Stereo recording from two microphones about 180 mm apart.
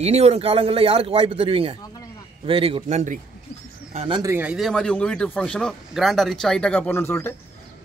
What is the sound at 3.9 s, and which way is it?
Speech, 30° right (ahead or behind).